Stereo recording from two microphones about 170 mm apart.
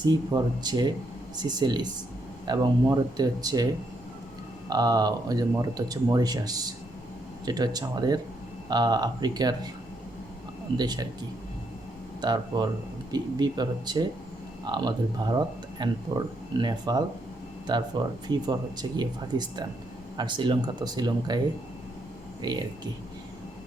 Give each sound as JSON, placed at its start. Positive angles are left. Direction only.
{"t": 0.0, "sound": "speech", "side_deg": -25}
{"t": 4.7, "sound": "speech", "side_deg": -20}
{"t": 10.8, "sound": "speech", "side_deg": -25}
{"t": 12.2, "sound": "speech", "side_deg": -25}